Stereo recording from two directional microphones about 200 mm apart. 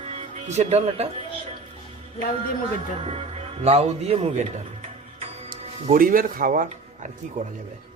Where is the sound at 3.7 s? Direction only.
30° right (ahead or behind).